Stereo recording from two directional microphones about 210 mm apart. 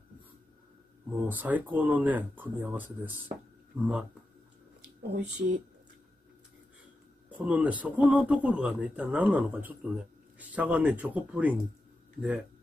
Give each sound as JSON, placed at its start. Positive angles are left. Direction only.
{"t": 1.1, "sound": "speech", "side_deg": -10}
{"t": 5.1, "sound": "speech", "side_deg": -55}
{"t": 7.2, "sound": "speech", "side_deg": -5}